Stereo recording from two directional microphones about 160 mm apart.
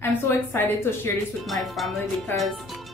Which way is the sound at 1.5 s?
Centre (ahead or behind).